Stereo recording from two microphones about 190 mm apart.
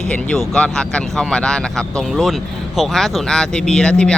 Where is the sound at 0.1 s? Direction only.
5° left (ahead or behind).